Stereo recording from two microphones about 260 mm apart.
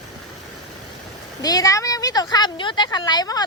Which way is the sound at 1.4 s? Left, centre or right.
Centre.